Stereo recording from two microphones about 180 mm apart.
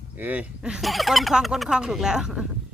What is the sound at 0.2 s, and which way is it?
Speech, 10° right (ahead or behind).